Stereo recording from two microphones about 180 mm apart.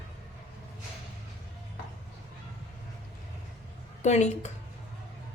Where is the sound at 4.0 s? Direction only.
40° left (ahead or behind).